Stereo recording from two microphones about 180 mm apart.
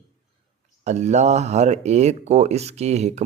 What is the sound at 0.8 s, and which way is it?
Speech, 40° right (ahead or behind).